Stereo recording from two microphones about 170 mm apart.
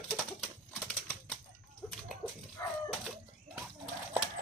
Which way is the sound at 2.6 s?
20° left (ahead or behind).